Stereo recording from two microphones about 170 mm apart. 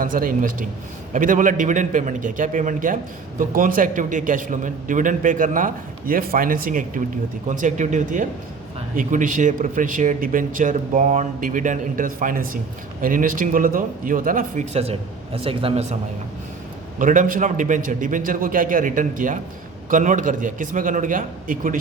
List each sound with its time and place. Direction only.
0.0 s a man's voice: 55° right (ahead or behind); by 16.0 s 40° right (ahead or behind)
17.0 s a man's voice: 50° right (ahead or behind)